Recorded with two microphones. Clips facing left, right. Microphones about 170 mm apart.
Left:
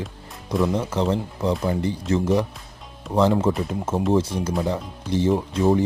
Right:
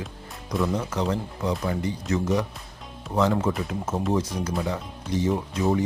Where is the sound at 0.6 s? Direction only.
25° left (ahead or behind).